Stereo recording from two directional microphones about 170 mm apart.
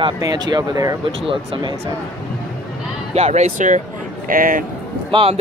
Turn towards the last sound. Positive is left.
turn(degrees=-30)  # may be behind; listen again after turning